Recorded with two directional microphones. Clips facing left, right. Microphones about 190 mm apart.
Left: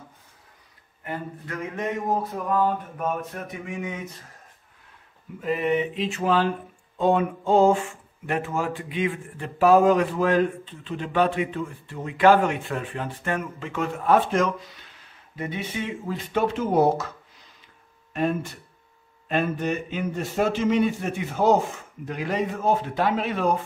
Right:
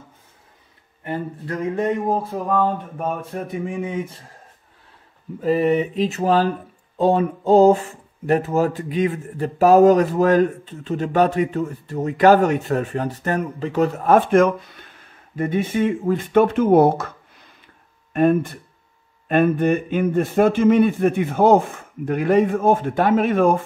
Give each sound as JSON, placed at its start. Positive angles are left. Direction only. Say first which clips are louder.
{"t": 1.0, "sound": "speech", "louder": "right 6 dB", "side_deg": -30}
{"t": 5.4, "sound": "a man's voice", "louder": "right 6 dB", "side_deg": -35}